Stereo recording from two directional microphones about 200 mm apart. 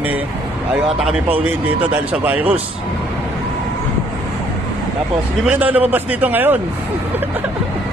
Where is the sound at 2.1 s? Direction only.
5° right (ahead or behind).